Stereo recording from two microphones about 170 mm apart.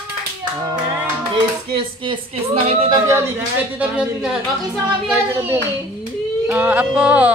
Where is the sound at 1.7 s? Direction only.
30° right (ahead or behind).